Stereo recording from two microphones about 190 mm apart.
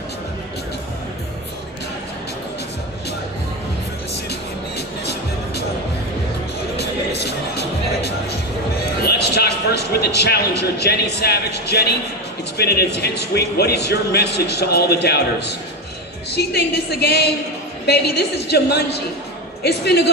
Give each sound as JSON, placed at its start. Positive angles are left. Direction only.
{"t": 4.1, "sound": "music", "side_deg": 60}
{"t": 6.8, "sound": "music", "side_deg": 60}
{"t": 9.0, "sound": "a man's voice", "side_deg": 60}